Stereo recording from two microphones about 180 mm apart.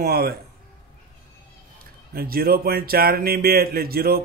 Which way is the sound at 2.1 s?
55° right (ahead or behind).